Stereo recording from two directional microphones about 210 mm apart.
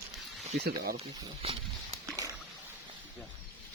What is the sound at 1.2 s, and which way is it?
Speech, 25° right (ahead or behind).